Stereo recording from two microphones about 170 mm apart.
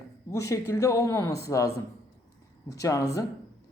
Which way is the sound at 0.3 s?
20° left (ahead or behind).